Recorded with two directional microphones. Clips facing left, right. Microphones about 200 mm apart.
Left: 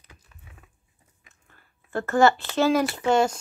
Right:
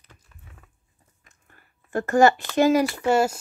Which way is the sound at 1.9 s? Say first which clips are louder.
Right 2 dB; 15° right (ahead or behind).